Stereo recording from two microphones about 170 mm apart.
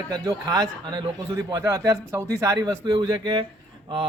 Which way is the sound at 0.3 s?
25° right (ahead or behind).